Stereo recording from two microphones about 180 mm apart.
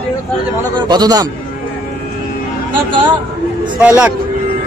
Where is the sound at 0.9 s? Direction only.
20° right (ahead or behind).